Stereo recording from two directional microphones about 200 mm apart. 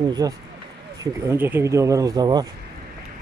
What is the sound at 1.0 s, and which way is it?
Speech, 10° right (ahead or behind).